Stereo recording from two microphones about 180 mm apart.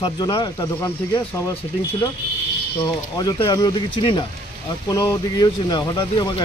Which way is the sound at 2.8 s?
20° left (ahead or behind).